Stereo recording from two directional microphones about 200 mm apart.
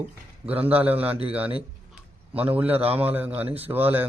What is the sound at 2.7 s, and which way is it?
Speech, 30° right (ahead or behind).